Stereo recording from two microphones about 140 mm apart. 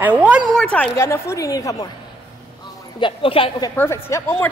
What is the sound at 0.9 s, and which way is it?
Speech, 20° left (ahead or behind).